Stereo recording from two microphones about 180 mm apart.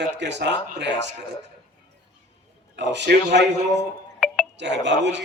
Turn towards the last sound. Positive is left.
turn(degrees=-80)